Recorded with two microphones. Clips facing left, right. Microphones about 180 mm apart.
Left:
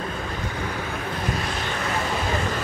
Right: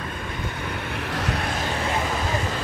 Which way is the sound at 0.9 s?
70° right (ahead or behind).